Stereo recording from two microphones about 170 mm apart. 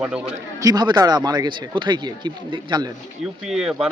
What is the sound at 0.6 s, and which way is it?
Speech, 20° right (ahead or behind).